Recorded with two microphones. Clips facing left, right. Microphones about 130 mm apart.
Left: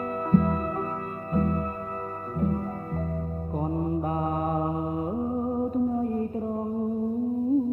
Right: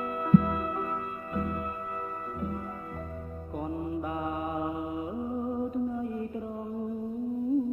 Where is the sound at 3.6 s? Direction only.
40° left (ahead or behind).